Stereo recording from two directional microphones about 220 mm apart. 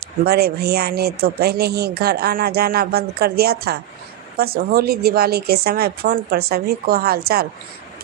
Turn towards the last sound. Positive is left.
turn(degrees=-45)  # may be behind; listen again after turning